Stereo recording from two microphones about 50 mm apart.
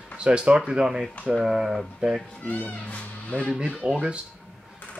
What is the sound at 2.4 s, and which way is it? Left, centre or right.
Speech, left.